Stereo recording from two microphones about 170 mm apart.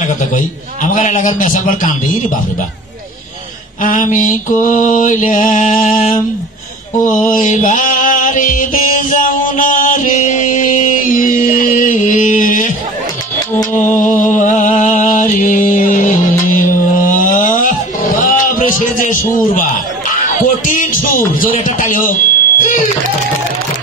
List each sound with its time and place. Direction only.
0.8 s mantra: 50° left (ahead or behind)
3.8 s mantra: 50° left (ahead or behind)
7.0 s music: 50° left (ahead or behind)
13.7 s a sound: 50° left (ahead or behind)
20.1 s music: 50° left (ahead or behind)
21.3 s smoke detector: 50° left (ahead or behind)